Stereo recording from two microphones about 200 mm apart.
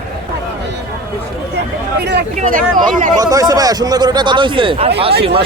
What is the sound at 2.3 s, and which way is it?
Speech, 40° right (ahead or behind).